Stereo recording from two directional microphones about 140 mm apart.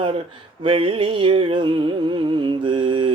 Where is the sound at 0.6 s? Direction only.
40° right (ahead or behind).